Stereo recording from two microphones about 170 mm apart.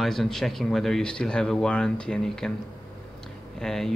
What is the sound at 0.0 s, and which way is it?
Speech, centre (ahead or behind).